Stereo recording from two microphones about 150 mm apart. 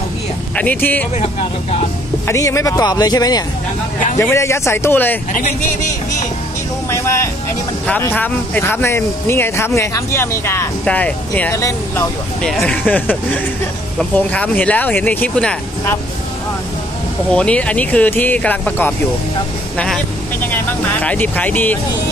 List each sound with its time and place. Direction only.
0.6 s speech: 10° left (ahead or behind)
1.2 s speech: 45° left (ahead or behind)
2.2 s speech: 20° left (ahead or behind)
6.9 s vehicle: 20° left (ahead or behind)
8.0 s speech: 15° left (ahead or behind)
17.3 s speech: 5° left (ahead or behind)
21.0 s speech: 10° left (ahead or behind)